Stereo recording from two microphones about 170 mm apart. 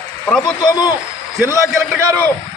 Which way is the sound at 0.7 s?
25° left (ahead or behind).